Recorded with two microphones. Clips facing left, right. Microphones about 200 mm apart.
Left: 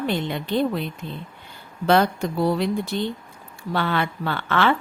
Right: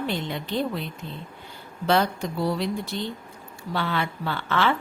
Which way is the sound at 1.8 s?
55° left (ahead or behind).